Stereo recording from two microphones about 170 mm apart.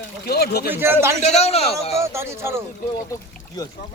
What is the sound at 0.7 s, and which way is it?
Speech, 10° right (ahead or behind).